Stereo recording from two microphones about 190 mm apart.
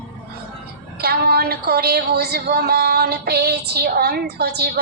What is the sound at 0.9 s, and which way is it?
A woman's voice, 55° right (ahead or behind).